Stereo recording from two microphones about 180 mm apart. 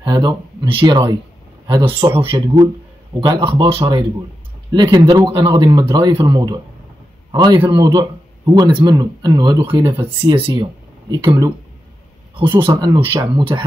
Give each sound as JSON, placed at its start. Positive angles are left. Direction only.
{"t": 0.0, "sound": "speech", "side_deg": -25}
{"t": 12.6, "sound": "speech", "side_deg": -25}